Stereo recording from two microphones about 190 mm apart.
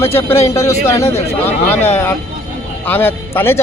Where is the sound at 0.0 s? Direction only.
15° left (ahead or behind).